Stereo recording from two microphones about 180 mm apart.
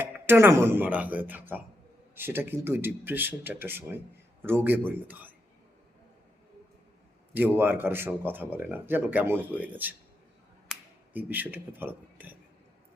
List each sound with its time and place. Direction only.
0.0 s speech: 10° right (ahead or behind)
7.3 s speech: 10° right (ahead or behind)